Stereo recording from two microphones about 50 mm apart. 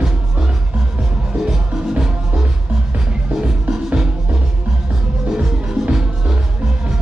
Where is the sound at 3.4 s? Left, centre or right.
Centre.